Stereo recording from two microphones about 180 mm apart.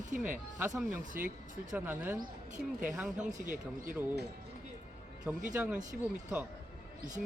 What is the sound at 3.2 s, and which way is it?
Speech, 45° right (ahead or behind).